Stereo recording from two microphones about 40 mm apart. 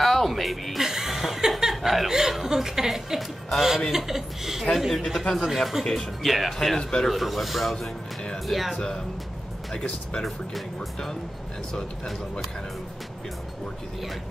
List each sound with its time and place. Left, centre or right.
0.0 s music: centre
0.8 s chuckle: centre
3.2 s speech: centre
3.9 s speech: centre
6.8 s a man's voice: centre
7.1 s speech: centre
8.7 s speech: centre
10.2 s speech: centre